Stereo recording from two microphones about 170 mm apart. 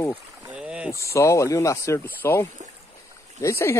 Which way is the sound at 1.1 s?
15° left (ahead or behind).